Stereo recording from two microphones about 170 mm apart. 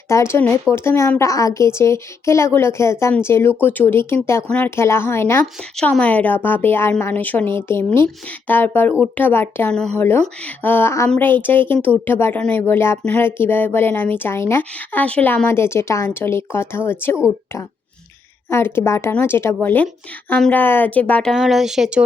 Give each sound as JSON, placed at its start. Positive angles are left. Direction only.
{"t": 0.1, "sound": "speech", "side_deg": 15}
{"t": 18.5, "sound": "a woman's voice", "side_deg": 15}